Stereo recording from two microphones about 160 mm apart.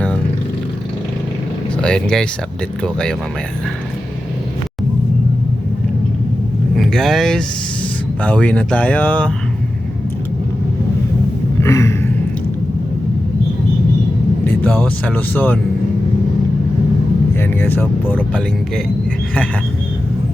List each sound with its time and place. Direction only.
1.8 s speech: 5° left (ahead or behind)
6.7 s speech: centre (ahead or behind)
11.6 s a sound: 20° left (ahead or behind)
14.6 s speech: 10° left (ahead or behind)
17.3 s speech: 15° left (ahead or behind)